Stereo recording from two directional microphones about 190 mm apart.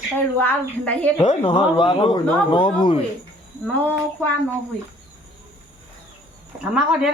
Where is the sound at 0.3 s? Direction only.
10° left (ahead or behind).